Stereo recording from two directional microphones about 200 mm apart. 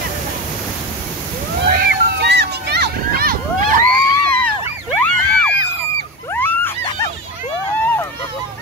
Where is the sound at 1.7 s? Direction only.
55° right (ahead or behind).